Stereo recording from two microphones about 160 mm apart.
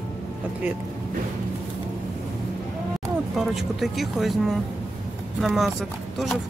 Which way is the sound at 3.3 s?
Centre (ahead or behind).